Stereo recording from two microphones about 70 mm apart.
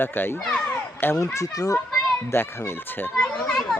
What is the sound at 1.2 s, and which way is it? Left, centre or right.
Speech, left.